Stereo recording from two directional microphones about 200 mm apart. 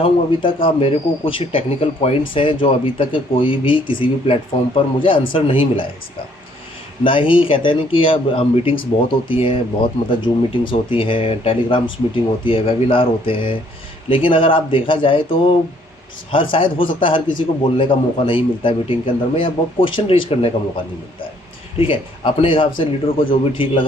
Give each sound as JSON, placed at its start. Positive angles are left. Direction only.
{"t": 0.0, "sound": "a man's voice", "side_deg": 25}
{"t": 7.0, "sound": "a man's voice", "side_deg": 25}
{"t": 21.8, "sound": "a man's voice", "side_deg": 25}